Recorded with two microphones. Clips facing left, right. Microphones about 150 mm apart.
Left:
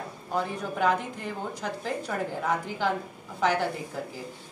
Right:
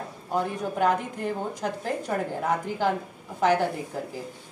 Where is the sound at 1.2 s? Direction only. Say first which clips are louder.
Right 4 dB; 50° right (ahead or behind).